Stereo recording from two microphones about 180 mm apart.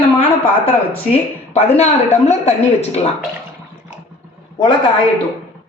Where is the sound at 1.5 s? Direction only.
35° left (ahead or behind).